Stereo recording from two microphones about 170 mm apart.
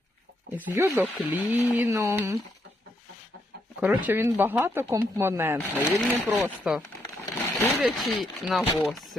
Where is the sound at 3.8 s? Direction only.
10° right (ahead or behind).